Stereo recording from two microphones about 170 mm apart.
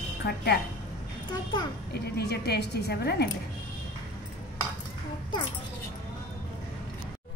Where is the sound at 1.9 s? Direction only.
70° left (ahead or behind).